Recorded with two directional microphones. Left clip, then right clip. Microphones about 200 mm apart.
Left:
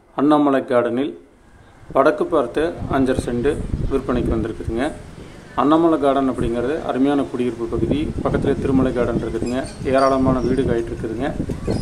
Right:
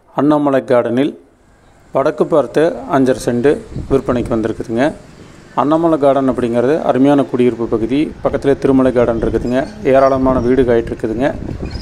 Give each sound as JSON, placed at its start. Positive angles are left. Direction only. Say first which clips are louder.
{"t": 0.1, "sound": "a man's voice", "louder": "right 3 dB", "side_deg": -35}